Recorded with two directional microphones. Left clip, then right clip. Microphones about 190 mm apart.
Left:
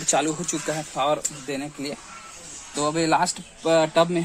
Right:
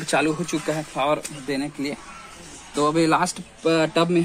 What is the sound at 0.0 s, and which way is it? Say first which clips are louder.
A man's voice: right 1 dB; 25° left (ahead or behind).